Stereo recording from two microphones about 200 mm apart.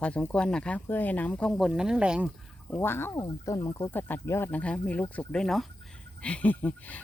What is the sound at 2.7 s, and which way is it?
Speech, 10° left (ahead or behind).